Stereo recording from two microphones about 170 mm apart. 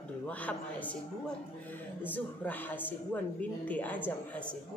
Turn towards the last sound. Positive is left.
turn(degrees=10)  # may be behind; listen again after turning